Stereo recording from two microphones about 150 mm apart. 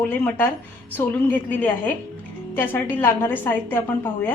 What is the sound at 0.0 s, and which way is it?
A woman's voice, 15° left (ahead or behind).